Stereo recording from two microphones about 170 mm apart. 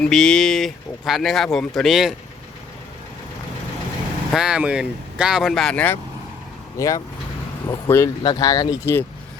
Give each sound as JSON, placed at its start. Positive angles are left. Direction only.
{"t": 0.0, "sound": "speech", "side_deg": 5}
{"t": 4.3, "sound": "speech", "side_deg": -5}